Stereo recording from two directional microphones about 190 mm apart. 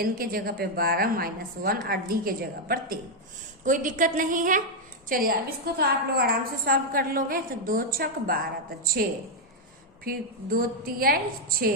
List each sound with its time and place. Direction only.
0.0 s a woman's voice: 50° right (ahead or behind)